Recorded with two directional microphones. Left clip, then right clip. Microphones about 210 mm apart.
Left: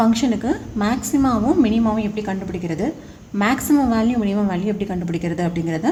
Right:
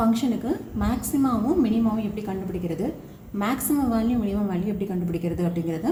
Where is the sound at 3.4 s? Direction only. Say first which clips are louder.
Left 7 dB; 50° left (ahead or behind).